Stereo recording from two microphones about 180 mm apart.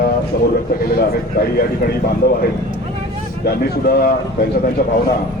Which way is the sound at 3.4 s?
60° left (ahead or behind).